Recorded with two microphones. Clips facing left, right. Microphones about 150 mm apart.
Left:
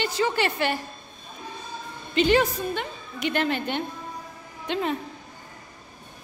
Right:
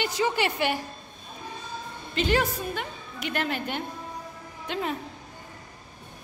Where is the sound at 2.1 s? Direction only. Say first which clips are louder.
Left 5 dB; centre (ahead or behind).